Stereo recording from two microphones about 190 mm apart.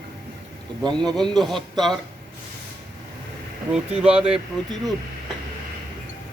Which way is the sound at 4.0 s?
5° right (ahead or behind).